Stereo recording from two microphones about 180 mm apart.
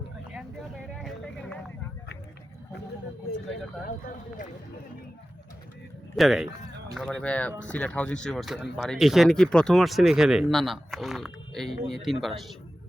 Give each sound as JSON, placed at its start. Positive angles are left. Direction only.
{"t": 0.9, "sound": "a sound", "side_deg": 5}
{"t": 3.8, "sound": "speech", "side_deg": 50}
{"t": 6.1, "sound": "speech", "side_deg": 0}